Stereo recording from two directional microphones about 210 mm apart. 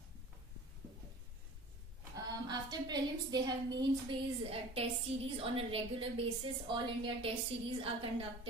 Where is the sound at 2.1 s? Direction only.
20° right (ahead or behind).